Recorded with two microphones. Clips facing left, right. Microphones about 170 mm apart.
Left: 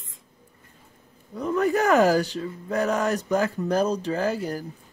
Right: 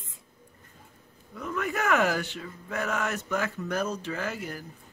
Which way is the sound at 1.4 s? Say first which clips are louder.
Left 9 dB; 35° left (ahead or behind).